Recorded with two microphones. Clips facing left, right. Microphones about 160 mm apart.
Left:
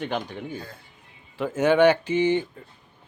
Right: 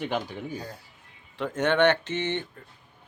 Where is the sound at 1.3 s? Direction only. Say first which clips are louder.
Left 4 dB; 5° left (ahead or behind).